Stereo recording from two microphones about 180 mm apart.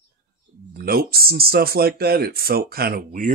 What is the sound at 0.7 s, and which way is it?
Speech, 55° right (ahead or behind).